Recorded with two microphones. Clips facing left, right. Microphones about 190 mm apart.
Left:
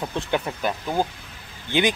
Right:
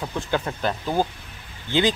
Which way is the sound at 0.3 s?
10° left (ahead or behind).